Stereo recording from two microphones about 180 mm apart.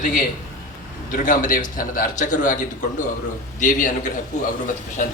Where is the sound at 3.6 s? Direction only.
45° left (ahead or behind).